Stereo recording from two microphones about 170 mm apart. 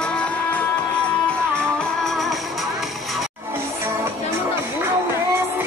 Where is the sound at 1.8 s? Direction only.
Centre (ahead or behind).